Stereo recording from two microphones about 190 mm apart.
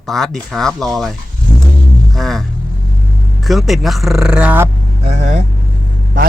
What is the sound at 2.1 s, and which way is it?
Speech, centre (ahead or behind).